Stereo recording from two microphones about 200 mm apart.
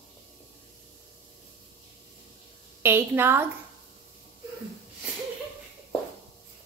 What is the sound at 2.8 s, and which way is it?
Speech, 10° right (ahead or behind).